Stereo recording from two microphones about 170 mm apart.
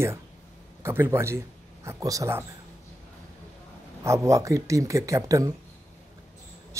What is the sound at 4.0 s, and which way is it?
Speech, 15° right (ahead or behind).